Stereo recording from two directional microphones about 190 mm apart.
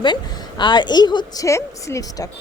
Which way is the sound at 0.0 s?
25° left (ahead or behind).